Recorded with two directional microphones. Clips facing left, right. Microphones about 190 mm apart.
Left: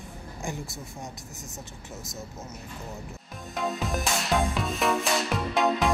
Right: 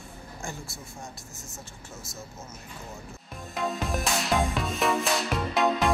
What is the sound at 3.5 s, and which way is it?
Music, centre (ahead or behind).